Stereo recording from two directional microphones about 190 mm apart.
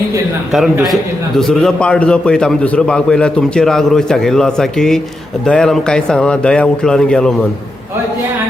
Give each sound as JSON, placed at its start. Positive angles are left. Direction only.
{"t": 0.5, "sound": "a man's voice", "side_deg": 0}